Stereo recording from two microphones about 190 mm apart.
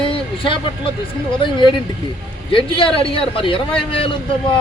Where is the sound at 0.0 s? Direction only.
25° left (ahead or behind).